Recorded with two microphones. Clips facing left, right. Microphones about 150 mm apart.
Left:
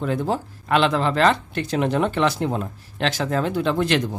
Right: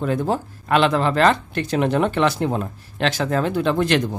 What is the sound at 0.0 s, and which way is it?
Speech, 50° right (ahead or behind).